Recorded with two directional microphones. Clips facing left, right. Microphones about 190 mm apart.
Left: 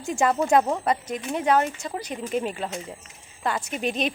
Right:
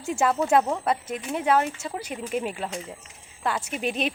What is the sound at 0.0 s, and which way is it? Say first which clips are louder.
Speech: left 1 dB; 5° right (ahead or behind).